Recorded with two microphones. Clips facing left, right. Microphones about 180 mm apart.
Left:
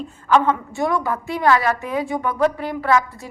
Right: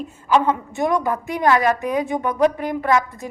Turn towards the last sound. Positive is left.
turn(degrees=-20)  # may be behind; listen again after turning